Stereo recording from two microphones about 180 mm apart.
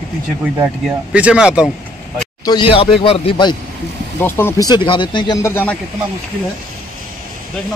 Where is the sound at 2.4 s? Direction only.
25° left (ahead or behind).